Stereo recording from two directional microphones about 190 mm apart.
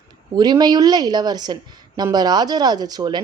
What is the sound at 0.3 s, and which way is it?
A woman's voice, 20° right (ahead or behind).